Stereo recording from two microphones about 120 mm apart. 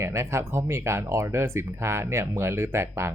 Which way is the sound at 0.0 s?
25° right (ahead or behind).